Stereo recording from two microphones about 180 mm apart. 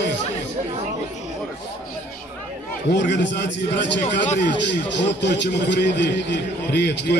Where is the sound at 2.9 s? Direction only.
80° left.